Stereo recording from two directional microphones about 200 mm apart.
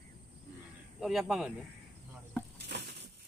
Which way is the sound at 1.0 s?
Centre (ahead or behind).